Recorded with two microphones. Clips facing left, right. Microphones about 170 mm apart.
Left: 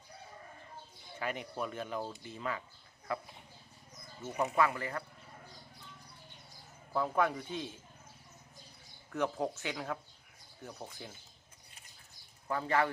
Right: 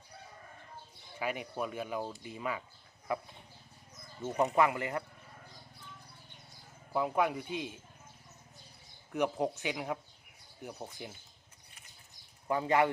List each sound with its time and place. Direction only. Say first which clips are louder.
1.2 s speech: right 2 dB; 10° right (ahead or behind)
6.9 s speech: right 1 dB; 10° right (ahead or behind)
9.1 s speech: right 2 dB; 15° right (ahead or behind)
12.5 s speech: right 3 dB; 20° right (ahead or behind)